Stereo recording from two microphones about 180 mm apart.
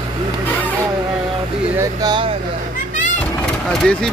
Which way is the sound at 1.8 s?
20° right (ahead or behind).